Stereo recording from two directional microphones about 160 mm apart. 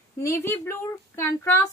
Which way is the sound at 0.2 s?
15° left (ahead or behind).